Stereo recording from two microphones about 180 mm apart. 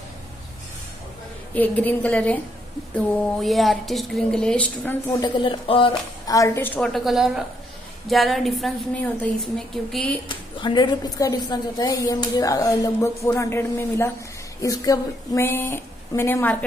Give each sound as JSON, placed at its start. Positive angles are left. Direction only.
{"t": 1.5, "sound": "a woman's voice", "side_deg": 10}
{"t": 5.2, "sound": "a woman's voice", "side_deg": 25}
{"t": 10.2, "sound": "a woman's voice", "side_deg": 25}